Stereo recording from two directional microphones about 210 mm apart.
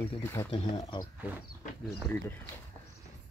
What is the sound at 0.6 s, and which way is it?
Speech, 25° left (ahead or behind).